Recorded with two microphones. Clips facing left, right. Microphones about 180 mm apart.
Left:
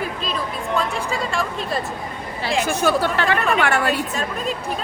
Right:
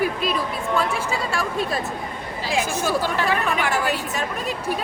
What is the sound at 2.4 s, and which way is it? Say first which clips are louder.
Speech: left 4 dB; 65° left (ahead or behind).